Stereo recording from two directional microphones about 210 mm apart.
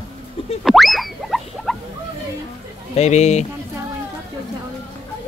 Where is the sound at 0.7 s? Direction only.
Centre (ahead or behind).